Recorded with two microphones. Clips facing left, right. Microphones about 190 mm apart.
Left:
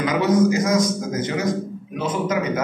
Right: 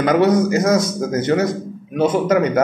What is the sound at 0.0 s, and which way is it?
Speech, 60° right (ahead or behind).